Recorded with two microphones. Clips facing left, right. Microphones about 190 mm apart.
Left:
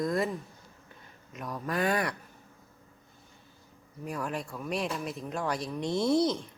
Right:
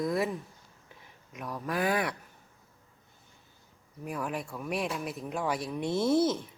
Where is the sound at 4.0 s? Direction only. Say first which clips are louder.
Even; 5° right (ahead or behind).